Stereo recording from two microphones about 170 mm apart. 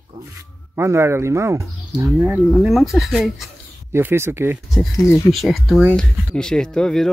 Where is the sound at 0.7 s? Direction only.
15° right (ahead or behind).